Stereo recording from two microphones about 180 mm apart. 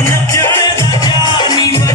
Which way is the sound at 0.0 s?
15° left (ahead or behind).